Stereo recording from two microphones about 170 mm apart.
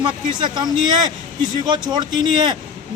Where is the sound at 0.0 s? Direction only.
25° right (ahead or behind).